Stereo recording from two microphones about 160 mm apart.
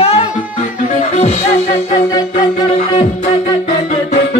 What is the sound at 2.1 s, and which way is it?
Music, 25° left (ahead or behind).